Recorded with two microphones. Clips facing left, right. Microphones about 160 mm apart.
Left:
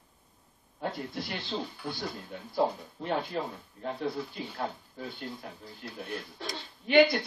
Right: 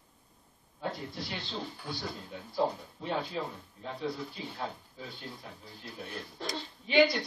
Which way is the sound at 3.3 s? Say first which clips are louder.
Left 2 dB; 50° left (ahead or behind).